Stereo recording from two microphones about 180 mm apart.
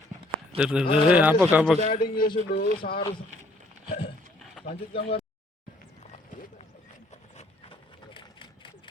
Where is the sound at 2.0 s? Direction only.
55° left (ahead or behind).